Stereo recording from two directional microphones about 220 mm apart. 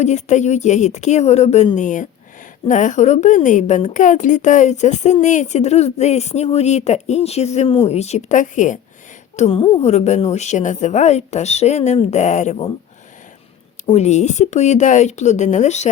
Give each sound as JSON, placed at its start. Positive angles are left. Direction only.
{"t": 0.0, "sound": "a woman's voice", "side_deg": 30}
{"t": 13.8, "sound": "a woman's voice", "side_deg": 30}